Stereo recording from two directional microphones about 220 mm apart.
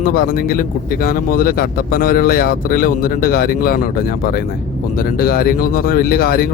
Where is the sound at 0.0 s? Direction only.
40° left (ahead or behind).